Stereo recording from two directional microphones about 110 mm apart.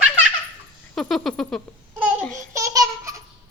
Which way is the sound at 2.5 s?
30° right (ahead or behind).